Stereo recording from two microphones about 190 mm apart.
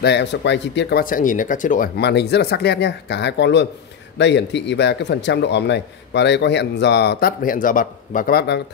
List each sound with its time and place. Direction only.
0.0 s speech: 65° left (ahead or behind); by 1.9 s 45° left (ahead or behind)
2.0 s speech: 60° left (ahead or behind)